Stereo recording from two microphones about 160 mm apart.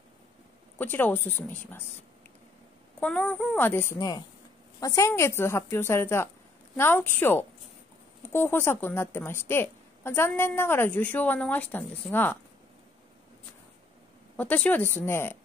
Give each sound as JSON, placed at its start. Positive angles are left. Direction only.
{"t": 0.7, "sound": "speech", "side_deg": 10}
{"t": 3.0, "sound": "speech", "side_deg": 10}
{"t": 14.3, "sound": "speech", "side_deg": 10}